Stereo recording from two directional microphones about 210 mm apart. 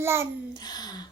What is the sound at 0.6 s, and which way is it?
Speech, 20° left (ahead or behind).